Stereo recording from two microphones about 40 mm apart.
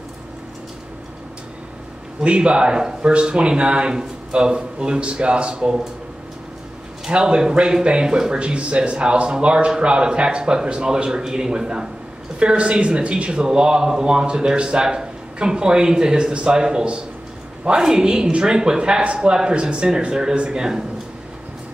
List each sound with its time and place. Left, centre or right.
2.2 s speech: right
7.1 s speech: right
12.4 s speech: right